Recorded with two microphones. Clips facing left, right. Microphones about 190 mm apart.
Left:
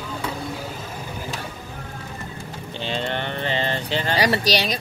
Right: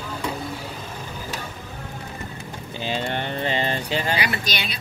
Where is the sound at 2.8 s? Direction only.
10° right (ahead or behind).